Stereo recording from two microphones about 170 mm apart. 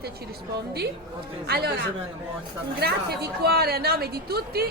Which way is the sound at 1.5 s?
70° right (ahead or behind).